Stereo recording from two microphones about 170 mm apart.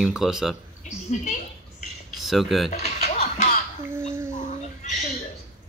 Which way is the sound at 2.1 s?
Centre (ahead or behind).